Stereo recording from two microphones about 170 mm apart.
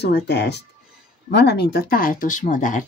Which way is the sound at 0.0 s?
75° left (ahead or behind).